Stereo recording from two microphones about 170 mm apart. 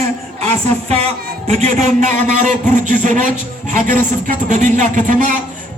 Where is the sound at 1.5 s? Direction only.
40° right (ahead or behind).